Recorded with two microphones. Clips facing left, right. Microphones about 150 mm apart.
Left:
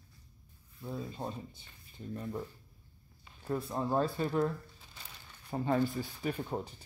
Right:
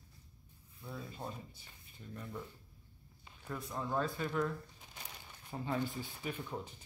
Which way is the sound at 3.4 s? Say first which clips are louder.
Left 7 dB; 30° left (ahead or behind).